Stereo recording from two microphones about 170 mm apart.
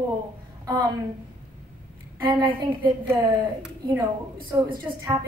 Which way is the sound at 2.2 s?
25° right (ahead or behind).